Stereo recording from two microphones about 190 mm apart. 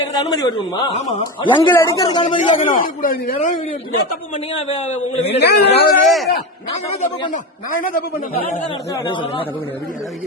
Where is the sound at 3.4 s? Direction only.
35° left (ahead or behind).